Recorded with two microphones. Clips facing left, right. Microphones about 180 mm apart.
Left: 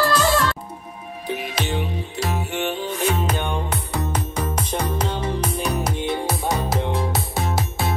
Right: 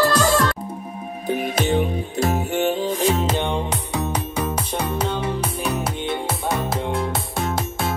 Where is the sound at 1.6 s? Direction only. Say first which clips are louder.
Right 7 dB; 45° right (ahead or behind).